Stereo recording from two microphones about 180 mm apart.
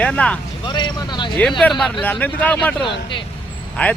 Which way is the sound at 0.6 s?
25° left (ahead or behind).